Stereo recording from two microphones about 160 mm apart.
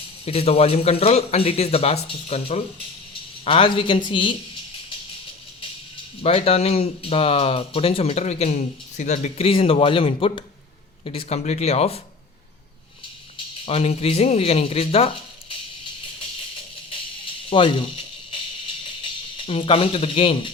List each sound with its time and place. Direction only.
0.3 s speech: 40° left (ahead or behind)
6.2 s speech: 40° left (ahead or behind)
13.3 s speech: 40° left (ahead or behind)
17.5 s a sound: 35° left (ahead or behind)
19.0 s speech: 35° left (ahead or behind)